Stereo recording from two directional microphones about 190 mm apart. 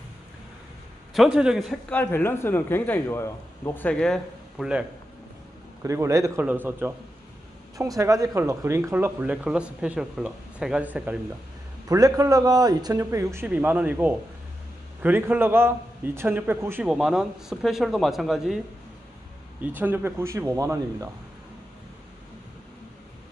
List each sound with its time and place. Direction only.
1.1 s a man's voice: centre (ahead or behind)
5.8 s speech: 15° right (ahead or behind)
11.9 s a man's voice: 20° right (ahead or behind); by 18.6 s centre (ahead or behind)
19.6 s speech: 10° right (ahead or behind)